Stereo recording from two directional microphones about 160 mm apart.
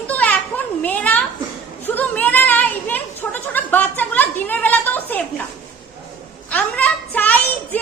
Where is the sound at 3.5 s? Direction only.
10° left (ahead or behind).